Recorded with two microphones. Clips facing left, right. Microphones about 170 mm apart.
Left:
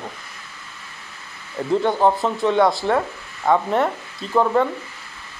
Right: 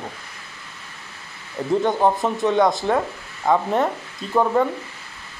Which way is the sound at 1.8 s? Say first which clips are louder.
Left 1 dB; 20° right (ahead or behind).